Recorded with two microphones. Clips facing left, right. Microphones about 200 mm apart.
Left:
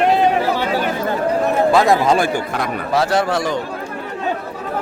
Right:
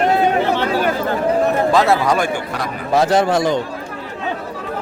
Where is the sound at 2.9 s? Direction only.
20° right (ahead or behind).